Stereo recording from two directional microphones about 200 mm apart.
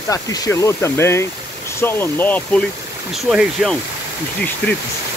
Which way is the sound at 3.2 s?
5° right (ahead or behind).